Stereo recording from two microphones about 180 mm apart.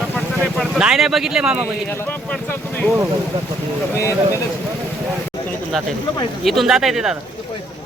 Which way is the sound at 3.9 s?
15° left (ahead or behind).